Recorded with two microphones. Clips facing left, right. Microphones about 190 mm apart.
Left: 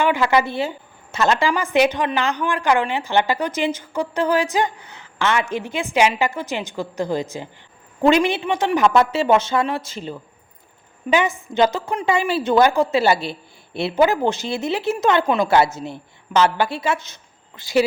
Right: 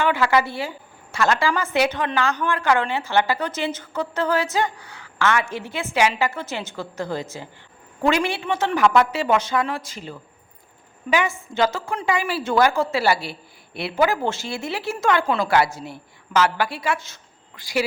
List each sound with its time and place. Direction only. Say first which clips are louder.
0.0 s a woman's voice: left 2 dB; 20° left (ahead or behind)